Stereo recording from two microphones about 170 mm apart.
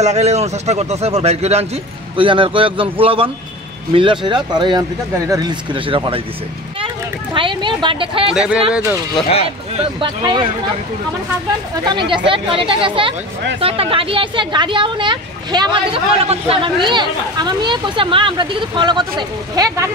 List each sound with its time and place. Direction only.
0.0 s a man's voice: 40° right (ahead or behind)
7.3 s a man's voice: 30° right (ahead or behind)
8.4 s speech: 5° right (ahead or behind)
9.1 s speech: 35° left (ahead or behind)
9.8 s speech: 30° right (ahead or behind)
11.9 s a man's voice: 30° right (ahead or behind)